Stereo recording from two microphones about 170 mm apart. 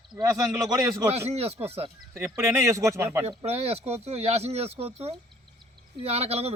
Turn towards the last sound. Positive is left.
turn(degrees=-35)  # may be behind; listen again after turning